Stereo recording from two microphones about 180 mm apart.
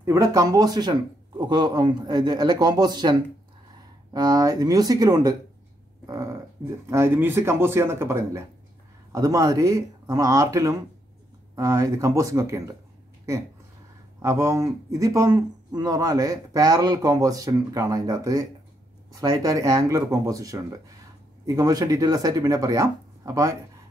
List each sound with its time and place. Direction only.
0.0 s speech: 15° right (ahead or behind)
6.0 s a sound: 20° right (ahead or behind)
6.9 s speech: 15° right (ahead or behind)
14.2 s speech: 15° right (ahead or behind)